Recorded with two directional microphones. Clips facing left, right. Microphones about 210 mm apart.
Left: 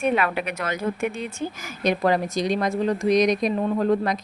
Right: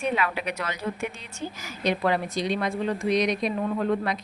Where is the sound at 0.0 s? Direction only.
55° left (ahead or behind).